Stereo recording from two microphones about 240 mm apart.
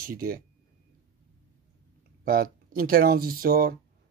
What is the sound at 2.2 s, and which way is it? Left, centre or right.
Speech, right.